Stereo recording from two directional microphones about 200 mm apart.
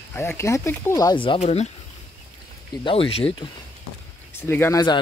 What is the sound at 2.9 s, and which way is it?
Speech, 30° left (ahead or behind).